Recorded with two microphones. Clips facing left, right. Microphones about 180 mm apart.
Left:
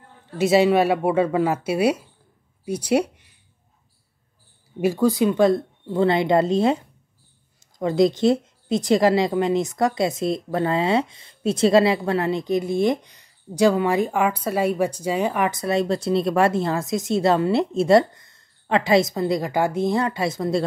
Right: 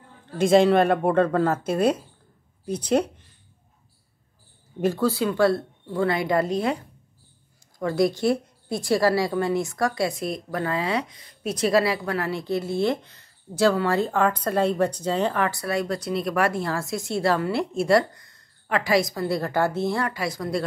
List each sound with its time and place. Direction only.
0.4 s speech: 5° left (ahead or behind)
2.6 s a sound: 10° left (ahead or behind)
4.7 s speech: 10° left (ahead or behind)
7.8 s speech: 20° left (ahead or behind)